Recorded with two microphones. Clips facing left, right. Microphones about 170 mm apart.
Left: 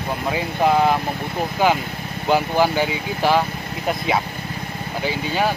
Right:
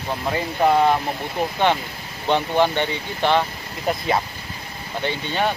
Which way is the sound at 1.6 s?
5° left (ahead or behind).